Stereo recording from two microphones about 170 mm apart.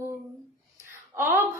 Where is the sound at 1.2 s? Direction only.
15° right (ahead or behind).